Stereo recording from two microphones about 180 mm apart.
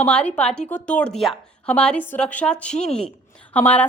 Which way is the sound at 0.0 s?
5° left (ahead or behind).